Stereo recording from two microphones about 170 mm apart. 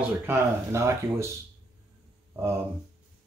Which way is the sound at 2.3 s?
15° right (ahead or behind).